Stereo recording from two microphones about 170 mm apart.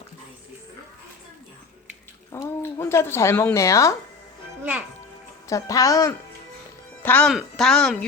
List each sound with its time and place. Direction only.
2.3 s speech: 15° left (ahead or behind)
5.5 s speech: 20° left (ahead or behind)
7.0 s speech: 10° left (ahead or behind)